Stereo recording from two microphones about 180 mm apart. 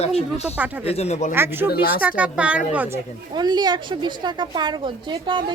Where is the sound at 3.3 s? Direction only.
25° right (ahead or behind).